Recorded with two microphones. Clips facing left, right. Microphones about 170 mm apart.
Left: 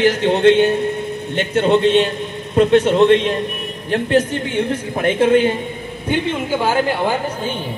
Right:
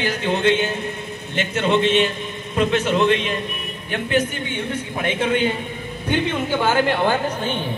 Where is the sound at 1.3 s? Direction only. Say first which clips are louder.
Left 4 dB; 35° left (ahead or behind).